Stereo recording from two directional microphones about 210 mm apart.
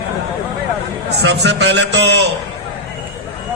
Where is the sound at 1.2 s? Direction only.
55° right (ahead or behind).